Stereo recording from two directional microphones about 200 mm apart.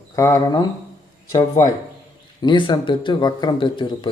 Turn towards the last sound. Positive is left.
turn(degrees=25)  # may be behind; listen again after turning